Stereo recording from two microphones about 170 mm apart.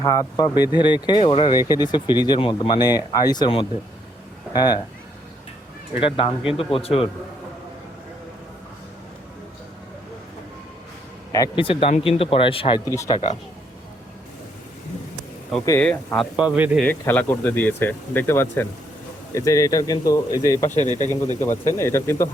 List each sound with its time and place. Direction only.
0.0 s speech: 20° left (ahead or behind)
6.0 s speech: 30° left (ahead or behind)
11.3 s speech: 20° left (ahead or behind)
12.8 s speech: 20° left (ahead or behind)
16.1 s a man's voice: 5° right (ahead or behind)
16.8 s speech: 10° left (ahead or behind)
20.7 s speech: 45° left (ahead or behind)
21.4 s speech: 15° left (ahead or behind)